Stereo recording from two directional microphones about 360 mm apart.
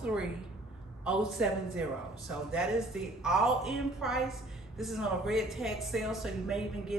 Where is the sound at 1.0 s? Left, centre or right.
Centre.